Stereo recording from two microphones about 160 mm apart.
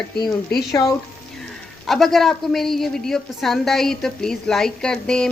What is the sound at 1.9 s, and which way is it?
A woman's voice, centre (ahead or behind).